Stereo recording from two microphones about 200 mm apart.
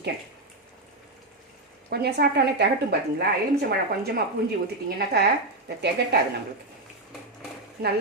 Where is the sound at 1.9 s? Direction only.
55° right (ahead or behind).